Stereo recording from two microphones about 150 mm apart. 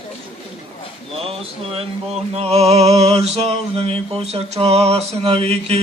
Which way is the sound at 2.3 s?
40° right (ahead or behind).